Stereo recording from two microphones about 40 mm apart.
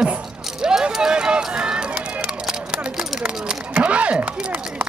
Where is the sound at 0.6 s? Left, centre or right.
Centre.